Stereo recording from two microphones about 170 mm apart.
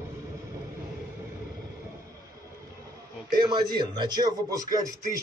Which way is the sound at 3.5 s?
25° right (ahead or behind).